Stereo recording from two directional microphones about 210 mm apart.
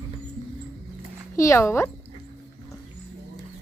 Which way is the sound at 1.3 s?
15° left (ahead or behind).